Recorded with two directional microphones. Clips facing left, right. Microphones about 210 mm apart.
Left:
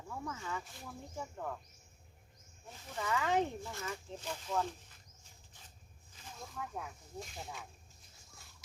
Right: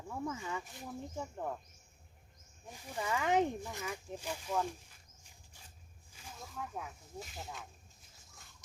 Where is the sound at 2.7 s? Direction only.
15° right (ahead or behind).